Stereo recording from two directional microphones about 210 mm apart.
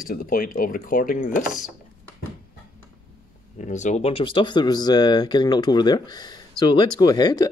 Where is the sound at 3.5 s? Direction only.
35° left (ahead or behind); by 7.5 s 20° left (ahead or behind).